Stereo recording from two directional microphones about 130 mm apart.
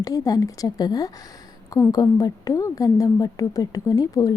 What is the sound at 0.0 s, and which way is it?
A woman's voice, 30° left (ahead or behind).